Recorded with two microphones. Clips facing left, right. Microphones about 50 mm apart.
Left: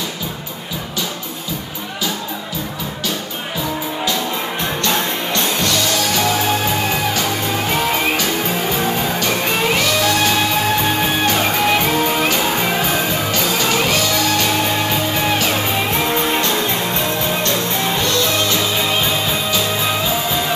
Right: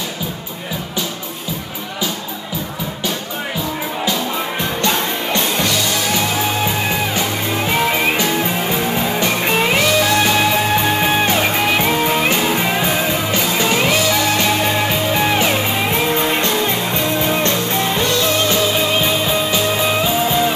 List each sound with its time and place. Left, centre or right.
4.8 s music: centre
7.2 s music: centre